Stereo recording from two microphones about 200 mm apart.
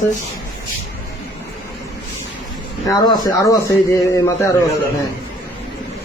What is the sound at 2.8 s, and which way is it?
Speech, 20° left (ahead or behind).